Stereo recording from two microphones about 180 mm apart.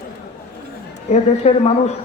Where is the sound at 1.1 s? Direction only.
35° left (ahead or behind).